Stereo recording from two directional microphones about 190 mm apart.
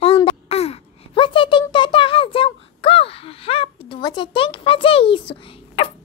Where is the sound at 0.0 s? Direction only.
30° left (ahead or behind).